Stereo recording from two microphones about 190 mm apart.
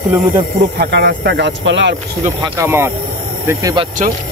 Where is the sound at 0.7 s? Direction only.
60° right (ahead or behind).